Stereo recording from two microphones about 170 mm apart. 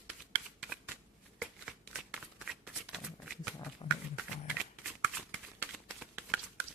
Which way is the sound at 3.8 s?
30° left (ahead or behind).